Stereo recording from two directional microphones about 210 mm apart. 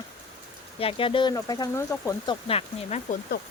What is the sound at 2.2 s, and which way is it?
Speech, 25° left (ahead or behind).